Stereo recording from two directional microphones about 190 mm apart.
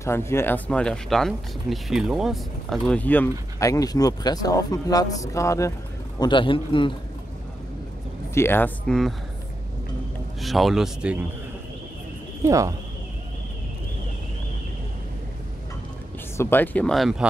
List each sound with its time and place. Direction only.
0.0 s speech: 15° left (ahead or behind)
8.4 s speech: 10° left (ahead or behind)
10.4 s speech: centre (ahead or behind)
12.4 s speech: 15° right (ahead or behind)
16.3 s speech: 10° left (ahead or behind)